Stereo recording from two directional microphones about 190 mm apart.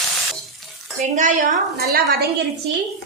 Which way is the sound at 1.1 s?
40° right (ahead or behind).